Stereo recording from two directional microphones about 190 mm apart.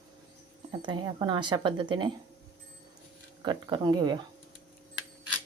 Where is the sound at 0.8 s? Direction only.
25° right (ahead or behind).